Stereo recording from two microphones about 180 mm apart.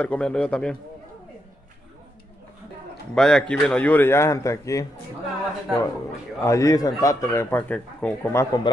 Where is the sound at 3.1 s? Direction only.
5° left (ahead or behind).